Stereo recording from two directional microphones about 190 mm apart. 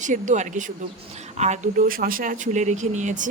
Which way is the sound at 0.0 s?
40° right (ahead or behind).